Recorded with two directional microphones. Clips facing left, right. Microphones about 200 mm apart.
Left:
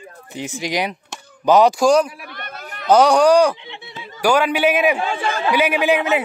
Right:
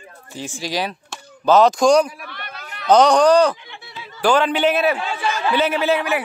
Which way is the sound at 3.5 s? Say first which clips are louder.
Left 4 dB; 20° left (ahead or behind).